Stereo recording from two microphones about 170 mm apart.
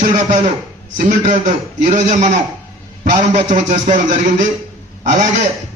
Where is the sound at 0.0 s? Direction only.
45° right (ahead or behind).